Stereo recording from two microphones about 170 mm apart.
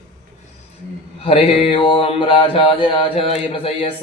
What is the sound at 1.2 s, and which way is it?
Speech, 35° left (ahead or behind).